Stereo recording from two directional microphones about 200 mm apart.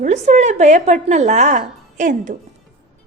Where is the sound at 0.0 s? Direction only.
35° right (ahead or behind).